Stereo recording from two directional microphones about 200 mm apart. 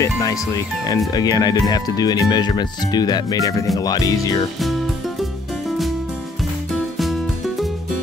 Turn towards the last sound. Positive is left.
turn(degrees=0)  # may be behind; listen again after turning